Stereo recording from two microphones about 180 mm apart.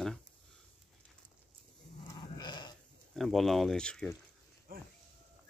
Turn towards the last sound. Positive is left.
turn(degrees=5)  # may be behind; listen again after turning